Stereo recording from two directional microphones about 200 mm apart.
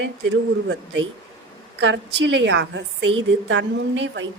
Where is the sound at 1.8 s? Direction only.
65° right (ahead or behind).